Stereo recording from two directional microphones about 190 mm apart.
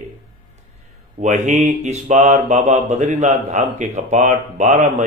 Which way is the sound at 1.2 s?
40° right (ahead or behind).